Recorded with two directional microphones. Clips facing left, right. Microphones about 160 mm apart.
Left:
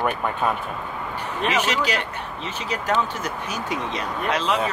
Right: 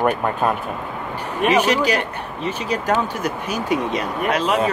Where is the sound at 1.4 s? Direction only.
10° right (ahead or behind).